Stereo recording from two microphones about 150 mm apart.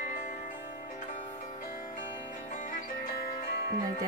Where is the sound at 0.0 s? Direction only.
50° left (ahead or behind).